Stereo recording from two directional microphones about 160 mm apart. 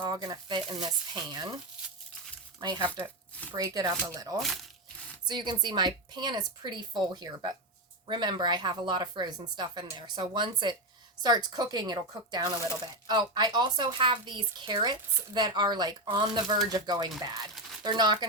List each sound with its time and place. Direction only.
0.0 s speech: 30° right (ahead or behind)
2.6 s speech: 25° right (ahead or behind)